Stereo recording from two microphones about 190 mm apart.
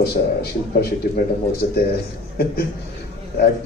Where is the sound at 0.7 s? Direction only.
45° left (ahead or behind).